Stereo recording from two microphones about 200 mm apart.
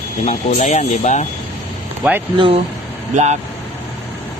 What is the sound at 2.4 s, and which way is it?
Speech, 25° right (ahead or behind).